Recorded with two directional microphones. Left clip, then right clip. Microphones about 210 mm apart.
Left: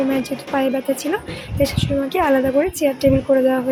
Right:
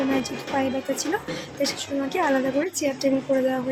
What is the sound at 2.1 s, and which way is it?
A woman's voice, 15° left (ahead or behind).